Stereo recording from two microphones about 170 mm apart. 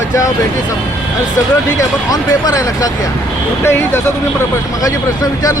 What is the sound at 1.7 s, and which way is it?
Speech, 20° left (ahead or behind).